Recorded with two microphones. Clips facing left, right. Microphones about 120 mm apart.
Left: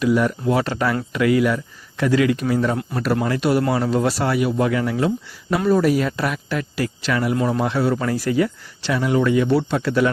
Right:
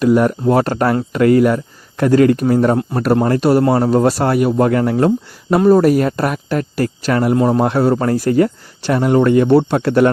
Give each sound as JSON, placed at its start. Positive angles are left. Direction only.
{"t": 0.0, "sound": "speech", "side_deg": -50}